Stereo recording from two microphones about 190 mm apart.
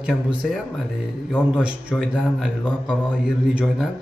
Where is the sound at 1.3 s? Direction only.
5° right (ahead or behind).